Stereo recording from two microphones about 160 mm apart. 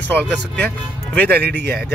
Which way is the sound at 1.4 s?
75° right (ahead or behind).